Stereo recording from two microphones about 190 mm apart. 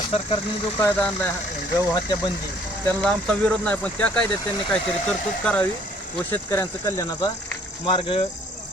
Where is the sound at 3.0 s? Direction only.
5° left (ahead or behind).